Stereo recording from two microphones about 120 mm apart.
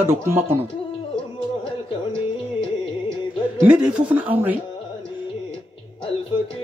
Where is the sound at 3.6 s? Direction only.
10° right (ahead or behind).